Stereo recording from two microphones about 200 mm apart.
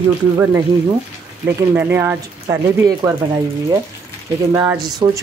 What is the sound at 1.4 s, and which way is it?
Speech, 10° right (ahead or behind).